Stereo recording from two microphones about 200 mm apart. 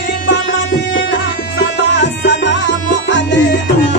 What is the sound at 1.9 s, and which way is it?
Music, 65° left (ahead or behind).